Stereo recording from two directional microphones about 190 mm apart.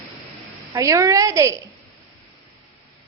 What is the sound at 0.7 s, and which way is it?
Speech, 15° right (ahead or behind).